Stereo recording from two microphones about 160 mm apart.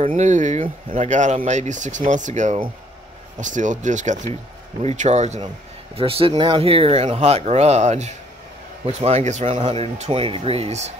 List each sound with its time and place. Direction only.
0.1 s speech: 50° right (ahead or behind)